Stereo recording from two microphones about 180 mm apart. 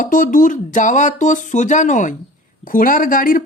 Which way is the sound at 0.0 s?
50° left (ahead or behind).